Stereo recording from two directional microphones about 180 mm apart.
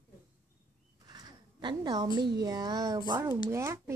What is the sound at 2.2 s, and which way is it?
Speech, 20° right (ahead or behind).